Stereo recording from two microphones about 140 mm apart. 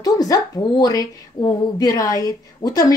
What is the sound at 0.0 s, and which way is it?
A woman's voice, 25° left (ahead or behind).